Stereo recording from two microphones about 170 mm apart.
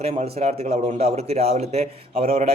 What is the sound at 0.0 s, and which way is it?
A man's voice, 35° right (ahead or behind).